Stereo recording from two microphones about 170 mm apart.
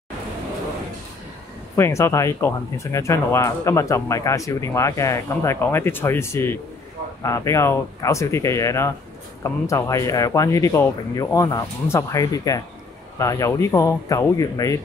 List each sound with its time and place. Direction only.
1.8 s speech: 15° left (ahead or behind)